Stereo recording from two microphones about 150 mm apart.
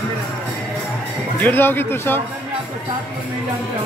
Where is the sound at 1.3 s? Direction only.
10° left (ahead or behind).